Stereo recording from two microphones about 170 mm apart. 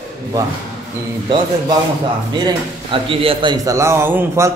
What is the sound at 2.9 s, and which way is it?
A man's voice, 30° right (ahead or behind).